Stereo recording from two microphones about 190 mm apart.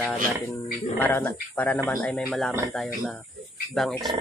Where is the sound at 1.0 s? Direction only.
10° left (ahead or behind).